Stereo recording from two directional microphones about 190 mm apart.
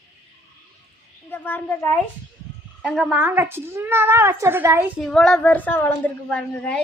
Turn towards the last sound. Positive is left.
turn(degrees=5)  # may be behind; listen again after turning